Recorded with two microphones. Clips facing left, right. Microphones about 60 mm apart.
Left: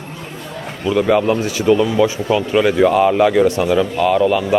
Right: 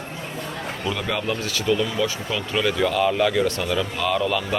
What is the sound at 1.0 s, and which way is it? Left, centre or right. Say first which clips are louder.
Speech: left 14 dB; left.